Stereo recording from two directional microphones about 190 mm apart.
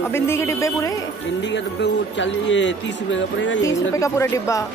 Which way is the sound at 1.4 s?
70° left (ahead or behind).